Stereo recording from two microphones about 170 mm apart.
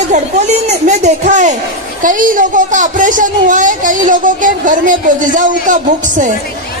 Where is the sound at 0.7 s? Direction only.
45° right (ahead or behind).